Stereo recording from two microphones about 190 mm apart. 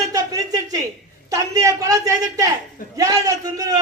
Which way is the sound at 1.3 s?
15° right (ahead or behind).